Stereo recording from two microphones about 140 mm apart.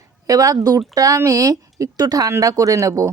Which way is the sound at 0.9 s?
25° right (ahead or behind).